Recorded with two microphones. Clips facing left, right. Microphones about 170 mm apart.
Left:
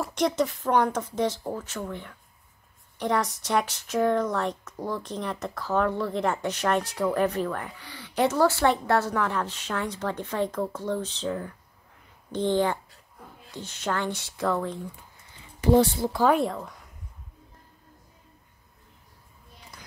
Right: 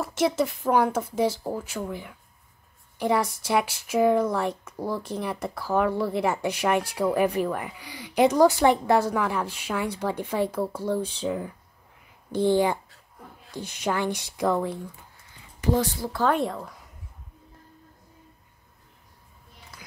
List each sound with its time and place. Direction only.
0.0 s speech: 5° right (ahead or behind)
15.6 s speech: 30° left (ahead or behind)
16.2 s speech: 5° left (ahead or behind)